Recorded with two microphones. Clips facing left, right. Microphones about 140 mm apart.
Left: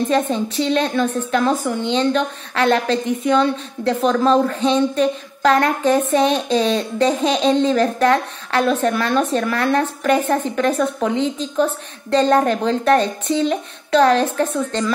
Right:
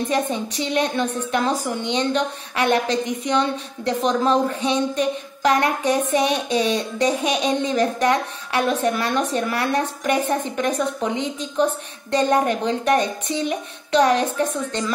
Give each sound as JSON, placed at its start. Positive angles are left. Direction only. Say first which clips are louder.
{"t": 0.1, "sound": "a woman's voice", "louder": "left 4 dB", "side_deg": -15}